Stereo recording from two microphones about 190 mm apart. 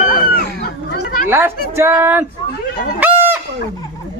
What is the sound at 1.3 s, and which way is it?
Speech, 15° right (ahead or behind).